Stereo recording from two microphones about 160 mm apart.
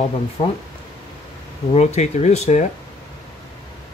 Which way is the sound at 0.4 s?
40° left (ahead or behind).